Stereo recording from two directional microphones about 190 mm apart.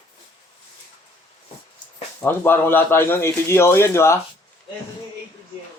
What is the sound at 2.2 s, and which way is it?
A man's voice, 10° left (ahead or behind).